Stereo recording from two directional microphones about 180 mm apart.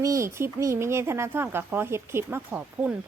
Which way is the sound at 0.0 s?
15° right (ahead or behind).